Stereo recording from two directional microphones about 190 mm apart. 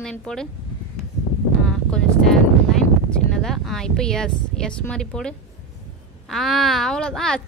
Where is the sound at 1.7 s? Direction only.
5° left (ahead or behind).